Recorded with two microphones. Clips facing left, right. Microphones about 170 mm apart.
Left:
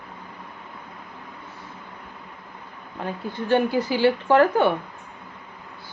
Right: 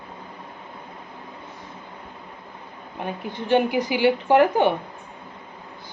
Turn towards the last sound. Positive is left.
turn(degrees=-15)  # may be behind; listen again after turning